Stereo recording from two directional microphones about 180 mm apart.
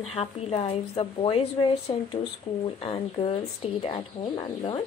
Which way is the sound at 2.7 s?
30° left (ahead or behind).